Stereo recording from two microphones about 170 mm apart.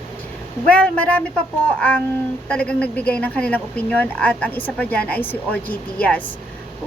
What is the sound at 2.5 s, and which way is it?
Speech, 5° left (ahead or behind).